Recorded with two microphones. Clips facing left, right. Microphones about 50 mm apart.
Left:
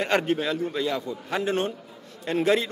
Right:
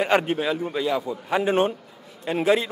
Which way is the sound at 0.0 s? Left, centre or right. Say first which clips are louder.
Right 3 dB; centre.